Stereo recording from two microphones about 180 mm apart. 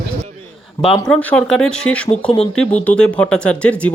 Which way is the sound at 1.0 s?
5° left (ahead or behind).